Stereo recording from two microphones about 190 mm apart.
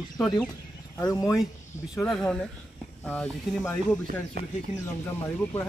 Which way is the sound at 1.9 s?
Centre (ahead or behind).